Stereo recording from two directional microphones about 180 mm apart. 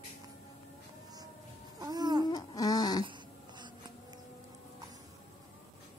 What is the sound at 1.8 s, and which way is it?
Babbling, 20° right (ahead or behind).